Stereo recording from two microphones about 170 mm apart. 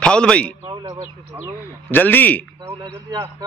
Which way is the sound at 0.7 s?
25° right (ahead or behind).